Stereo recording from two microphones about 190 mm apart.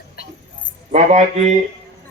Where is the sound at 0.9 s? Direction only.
35° right (ahead or behind).